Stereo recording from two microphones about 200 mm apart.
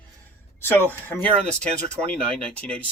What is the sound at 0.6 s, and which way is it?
Speech, 10° left (ahead or behind).